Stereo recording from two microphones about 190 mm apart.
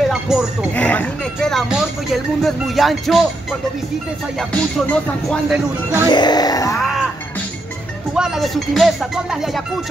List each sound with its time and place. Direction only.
0.1 s speech: centre (ahead or behind)
4.4 s speech: 5° left (ahead or behind)
6.0 s speech: 25° left (ahead or behind)
8.1 s speech: centre (ahead or behind)